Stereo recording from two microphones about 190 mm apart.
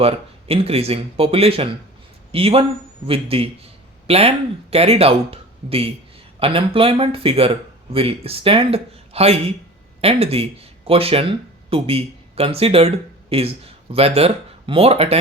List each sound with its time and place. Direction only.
0.0 s a man's voice: 30° right (ahead or behind)